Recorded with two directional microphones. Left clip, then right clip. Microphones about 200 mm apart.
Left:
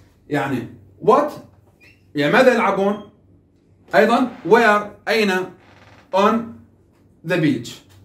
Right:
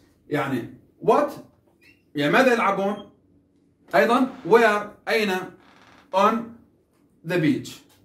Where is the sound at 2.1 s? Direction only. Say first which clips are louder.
Left 4 dB; 25° left (ahead or behind).